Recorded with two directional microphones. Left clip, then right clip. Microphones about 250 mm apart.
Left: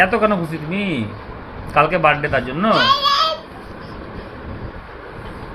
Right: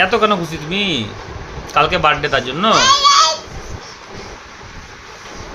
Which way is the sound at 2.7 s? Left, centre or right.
Centre.